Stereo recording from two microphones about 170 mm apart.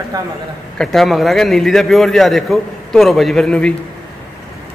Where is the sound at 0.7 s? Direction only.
Centre (ahead or behind).